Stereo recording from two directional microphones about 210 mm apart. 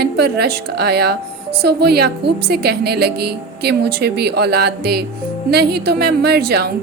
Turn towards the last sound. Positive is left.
turn(degrees=-50)  # may be behind; listen again after turning